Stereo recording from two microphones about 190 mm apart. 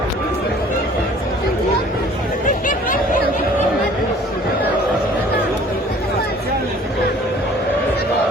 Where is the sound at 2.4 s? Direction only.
40° left (ahead or behind).